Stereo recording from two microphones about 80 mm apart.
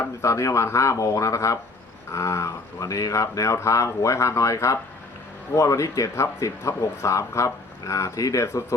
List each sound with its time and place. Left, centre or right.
0.0 s speech: left